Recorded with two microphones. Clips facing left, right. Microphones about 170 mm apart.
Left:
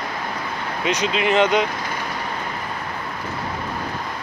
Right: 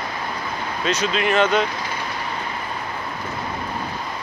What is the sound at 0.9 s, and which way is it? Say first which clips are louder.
Speech: left 1 dB; 15° left (ahead or behind).